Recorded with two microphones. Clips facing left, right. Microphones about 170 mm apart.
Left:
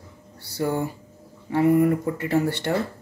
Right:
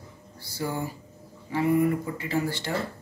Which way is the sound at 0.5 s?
60° left (ahead or behind).